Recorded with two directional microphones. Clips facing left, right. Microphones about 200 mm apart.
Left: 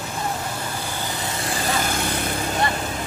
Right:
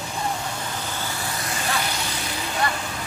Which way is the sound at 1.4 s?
30° left (ahead or behind).